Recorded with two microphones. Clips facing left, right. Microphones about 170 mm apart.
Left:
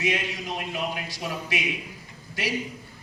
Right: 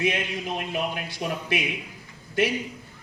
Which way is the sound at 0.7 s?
55° right (ahead or behind).